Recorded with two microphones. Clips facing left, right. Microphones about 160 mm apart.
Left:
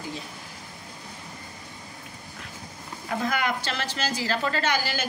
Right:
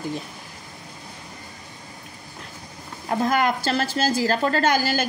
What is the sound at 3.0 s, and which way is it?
Speech, 45° right (ahead or behind).